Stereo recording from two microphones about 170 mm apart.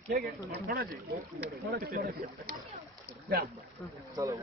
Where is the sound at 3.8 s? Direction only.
15° left (ahead or behind).